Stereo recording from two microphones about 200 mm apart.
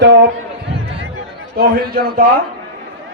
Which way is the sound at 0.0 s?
55° right (ahead or behind).